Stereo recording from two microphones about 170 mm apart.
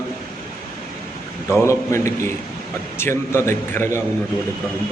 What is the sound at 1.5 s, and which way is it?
A man's voice, 15° left (ahead or behind).